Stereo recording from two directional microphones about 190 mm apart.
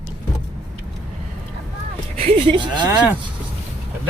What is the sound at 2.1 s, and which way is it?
Speech, 30° right (ahead or behind).